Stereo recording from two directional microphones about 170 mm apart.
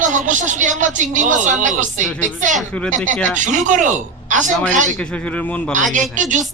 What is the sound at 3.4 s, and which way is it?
Speech, 45° right (ahead or behind).